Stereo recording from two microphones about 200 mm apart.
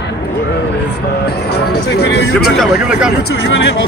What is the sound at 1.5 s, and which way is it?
Speech, 55° left (ahead or behind).